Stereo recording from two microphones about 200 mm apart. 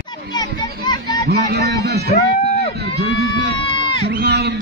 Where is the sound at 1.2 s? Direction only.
55° right (ahead or behind).